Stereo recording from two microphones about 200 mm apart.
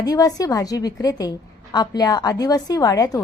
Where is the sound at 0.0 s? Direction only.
20° left (ahead or behind).